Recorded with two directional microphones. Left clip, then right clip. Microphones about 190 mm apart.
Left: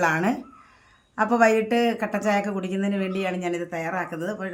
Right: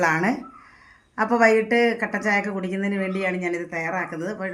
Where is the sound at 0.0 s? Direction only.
15° left (ahead or behind).